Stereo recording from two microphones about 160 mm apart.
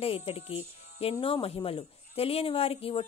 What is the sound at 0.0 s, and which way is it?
Speech, 35° left (ahead or behind).